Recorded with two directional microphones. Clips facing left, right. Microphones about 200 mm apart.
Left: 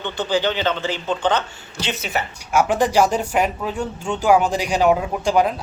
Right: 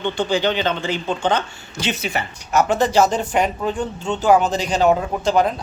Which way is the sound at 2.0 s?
Centre (ahead or behind).